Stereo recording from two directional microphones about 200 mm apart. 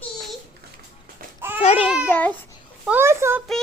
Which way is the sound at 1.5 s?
30° left (ahead or behind).